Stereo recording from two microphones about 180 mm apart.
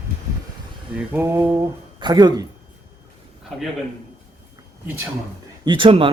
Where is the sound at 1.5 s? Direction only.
20° right (ahead or behind).